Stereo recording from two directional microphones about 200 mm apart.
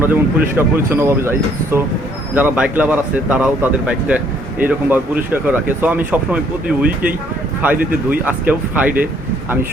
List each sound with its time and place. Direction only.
0.0 s speech: 10° right (ahead or behind)